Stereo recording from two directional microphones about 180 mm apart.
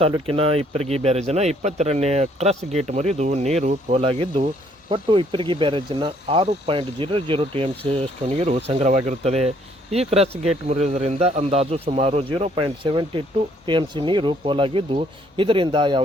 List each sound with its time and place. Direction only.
0.3 s speech: 30° right (ahead or behind)